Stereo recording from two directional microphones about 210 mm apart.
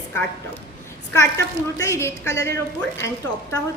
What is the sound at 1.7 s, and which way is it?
A woman's voice, 15° left (ahead or behind).